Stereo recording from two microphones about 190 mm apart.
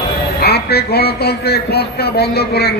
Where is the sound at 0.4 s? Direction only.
60° left (ahead or behind).